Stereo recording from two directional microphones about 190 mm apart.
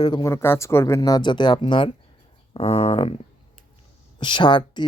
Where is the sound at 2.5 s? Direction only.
30° left (ahead or behind).